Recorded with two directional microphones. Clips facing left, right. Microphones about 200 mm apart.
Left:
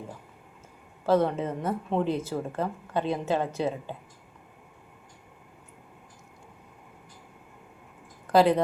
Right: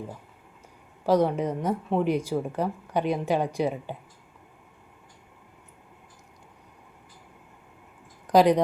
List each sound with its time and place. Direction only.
1.0 s speech: 15° right (ahead or behind)
8.3 s speech: 15° right (ahead or behind)